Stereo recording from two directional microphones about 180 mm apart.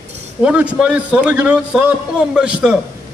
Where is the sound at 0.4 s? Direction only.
5° right (ahead or behind).